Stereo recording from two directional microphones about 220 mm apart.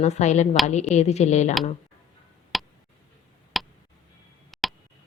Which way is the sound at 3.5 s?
Centre (ahead or behind).